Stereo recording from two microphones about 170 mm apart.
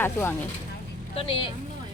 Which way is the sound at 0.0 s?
10° left (ahead or behind).